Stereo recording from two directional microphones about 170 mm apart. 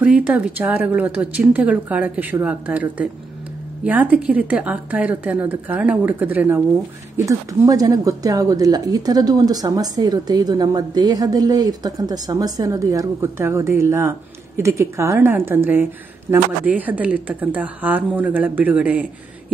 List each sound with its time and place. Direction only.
0.0 s a woman's voice: 10° right (ahead or behind)